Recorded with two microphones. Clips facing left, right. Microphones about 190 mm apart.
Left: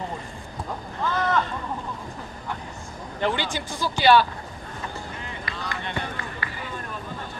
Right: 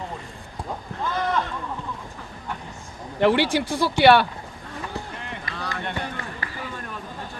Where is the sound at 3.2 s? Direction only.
70° right (ahead or behind).